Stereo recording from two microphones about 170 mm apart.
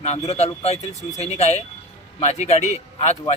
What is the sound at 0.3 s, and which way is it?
Speech, 40° left (ahead or behind).